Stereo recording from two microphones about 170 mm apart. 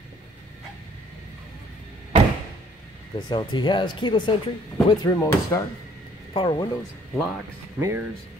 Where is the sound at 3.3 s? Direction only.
25° left (ahead or behind).